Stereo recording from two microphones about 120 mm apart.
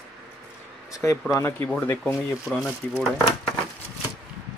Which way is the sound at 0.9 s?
25° left (ahead or behind).